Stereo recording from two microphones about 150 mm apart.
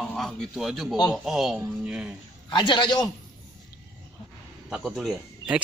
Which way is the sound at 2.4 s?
30° left (ahead or behind).